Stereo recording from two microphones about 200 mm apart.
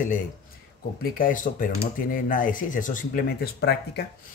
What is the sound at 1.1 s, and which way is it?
Speech, 40° left (ahead or behind).